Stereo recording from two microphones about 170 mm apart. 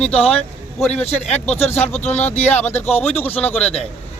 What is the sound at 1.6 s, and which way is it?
A man's voice, 15° left (ahead or behind).